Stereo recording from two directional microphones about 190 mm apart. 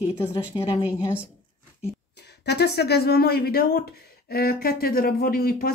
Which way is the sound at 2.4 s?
60° left (ahead or behind).